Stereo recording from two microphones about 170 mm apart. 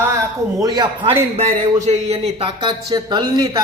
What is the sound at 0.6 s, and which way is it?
Speech, 25° right (ahead or behind).